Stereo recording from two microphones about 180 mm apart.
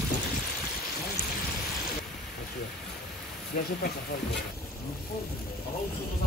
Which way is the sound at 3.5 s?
50° left (ahead or behind).